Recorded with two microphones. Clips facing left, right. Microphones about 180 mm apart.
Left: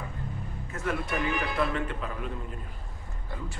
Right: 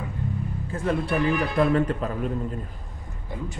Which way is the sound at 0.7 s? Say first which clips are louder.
Right 6 dB; 30° right (ahead or behind).